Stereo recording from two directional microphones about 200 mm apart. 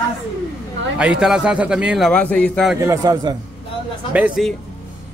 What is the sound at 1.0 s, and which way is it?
A man's voice, 5° right (ahead or behind).